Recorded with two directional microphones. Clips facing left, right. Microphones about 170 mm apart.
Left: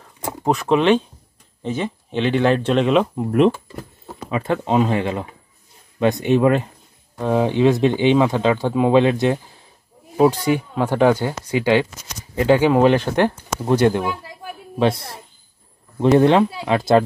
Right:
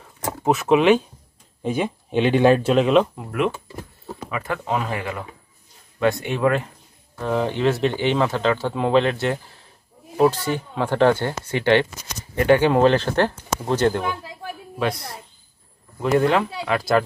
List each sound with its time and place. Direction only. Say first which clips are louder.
0.4 s speech: even; 5° right (ahead or behind)
3.2 s speech: left 8 dB; 30° left (ahead or behind); by 14.0 s 15° left (ahead or behind)
14.8 s speech: left 6 dB; 30° left (ahead or behind)